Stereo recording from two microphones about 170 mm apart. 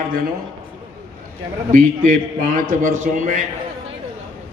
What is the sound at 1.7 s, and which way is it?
Speech, 50° right (ahead or behind).